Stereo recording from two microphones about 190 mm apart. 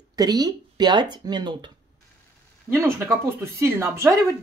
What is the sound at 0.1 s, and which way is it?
Speech, 20° right (ahead or behind).